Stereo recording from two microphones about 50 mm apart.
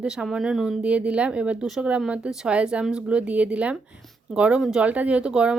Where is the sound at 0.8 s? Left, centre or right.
Right.